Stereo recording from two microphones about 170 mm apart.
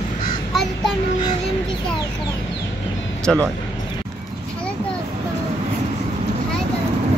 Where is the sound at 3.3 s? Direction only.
5° left (ahead or behind).